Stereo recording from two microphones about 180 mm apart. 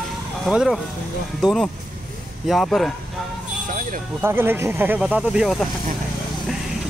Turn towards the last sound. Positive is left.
turn(degrees=0)  # may be behind; listen again after turning